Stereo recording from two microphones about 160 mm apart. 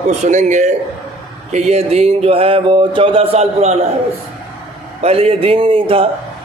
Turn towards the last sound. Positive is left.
turn(degrees=-35)  # may be behind; listen again after turning